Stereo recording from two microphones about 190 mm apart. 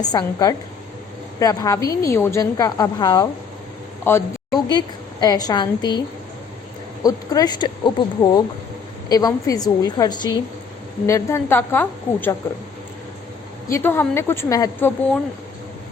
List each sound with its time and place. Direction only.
0.0 s a woman's voice: 20° left (ahead or behind)
5.2 s speech: 20° left (ahead or behind)
7.0 s a woman's voice: 20° left (ahead or behind)
13.7 s a woman's voice: 15° left (ahead or behind)